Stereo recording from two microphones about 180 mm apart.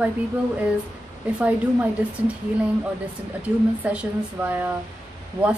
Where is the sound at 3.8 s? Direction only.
10° right (ahead or behind).